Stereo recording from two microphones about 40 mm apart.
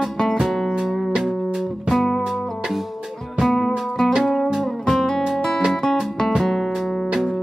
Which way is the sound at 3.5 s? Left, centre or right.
Centre.